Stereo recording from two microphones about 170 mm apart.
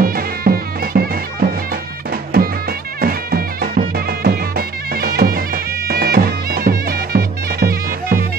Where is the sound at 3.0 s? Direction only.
60° right (ahead or behind).